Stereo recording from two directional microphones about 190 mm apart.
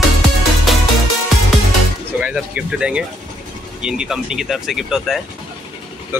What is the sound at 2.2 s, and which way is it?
Speech, 5° right (ahead or behind).